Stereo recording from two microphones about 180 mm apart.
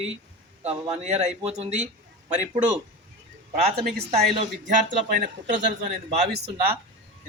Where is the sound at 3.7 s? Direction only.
60° right (ahead or behind).